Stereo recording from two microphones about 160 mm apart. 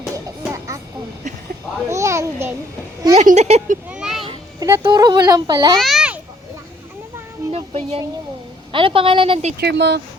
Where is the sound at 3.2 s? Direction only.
45° right (ahead or behind).